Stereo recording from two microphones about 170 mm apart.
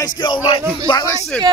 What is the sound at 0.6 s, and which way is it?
Speech, 15° right (ahead or behind).